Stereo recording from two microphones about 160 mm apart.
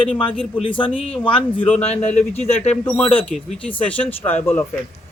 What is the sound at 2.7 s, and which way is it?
Speech, 10° left (ahead or behind).